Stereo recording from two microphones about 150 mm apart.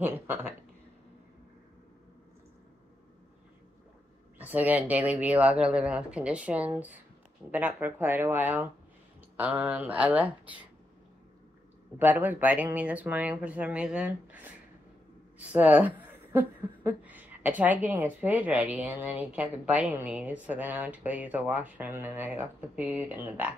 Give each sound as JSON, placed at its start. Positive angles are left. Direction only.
{"t": 0.0, "sound": "speech", "side_deg": -15}
{"t": 4.4, "sound": "speech", "side_deg": -10}
{"t": 12.0, "sound": "speech", "side_deg": -10}